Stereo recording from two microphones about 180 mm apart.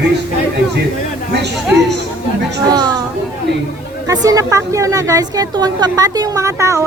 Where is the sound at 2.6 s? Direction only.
20° right (ahead or behind).